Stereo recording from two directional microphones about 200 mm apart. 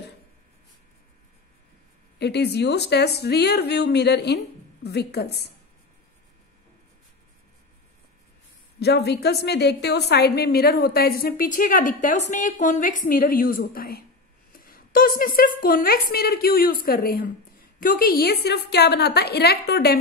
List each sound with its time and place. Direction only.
2.1 s speech: 55° left (ahead or behind)
8.7 s a woman's voice: 55° left (ahead or behind)